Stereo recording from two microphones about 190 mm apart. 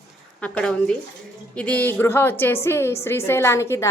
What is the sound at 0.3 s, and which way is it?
A woman's voice, 5° left (ahead or behind).